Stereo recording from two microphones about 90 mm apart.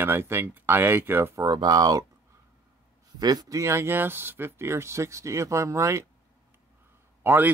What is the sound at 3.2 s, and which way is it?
Speech, 50° right (ahead or behind).